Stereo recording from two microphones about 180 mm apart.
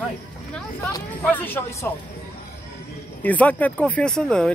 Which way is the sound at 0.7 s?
10° left (ahead or behind).